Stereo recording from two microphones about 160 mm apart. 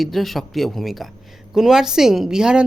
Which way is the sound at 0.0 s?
Centre (ahead or behind).